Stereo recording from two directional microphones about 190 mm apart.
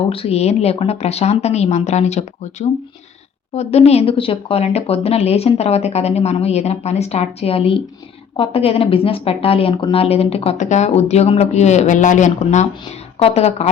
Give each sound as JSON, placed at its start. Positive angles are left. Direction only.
{"t": 0.1, "sound": "speech", "side_deg": 30}